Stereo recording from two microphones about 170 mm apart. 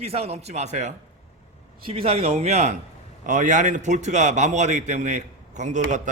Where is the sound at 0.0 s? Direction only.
35° right (ahead or behind).